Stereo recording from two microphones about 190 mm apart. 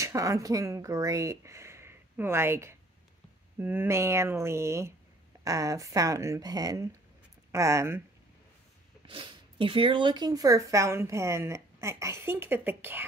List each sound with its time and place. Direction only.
0.0 s speech: 15° right (ahead or behind)
9.0 s speech: 25° right (ahead or behind); by 13.0 s 10° right (ahead or behind)